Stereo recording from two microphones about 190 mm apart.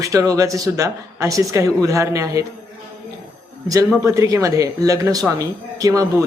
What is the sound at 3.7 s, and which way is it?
Speech, 15° right (ahead or behind).